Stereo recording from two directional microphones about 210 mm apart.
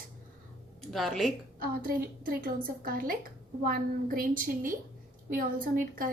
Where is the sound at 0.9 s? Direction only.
Centre (ahead or behind).